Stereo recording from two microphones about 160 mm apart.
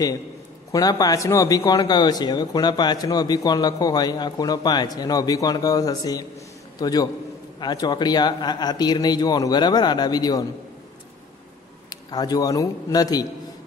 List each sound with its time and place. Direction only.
0.7 s a man's voice: 25° left (ahead or behind)
11.9 s a man's voice: 25° left (ahead or behind)